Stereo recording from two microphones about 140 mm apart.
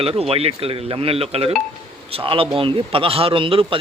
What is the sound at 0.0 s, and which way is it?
A man's voice, 45° right (ahead or behind).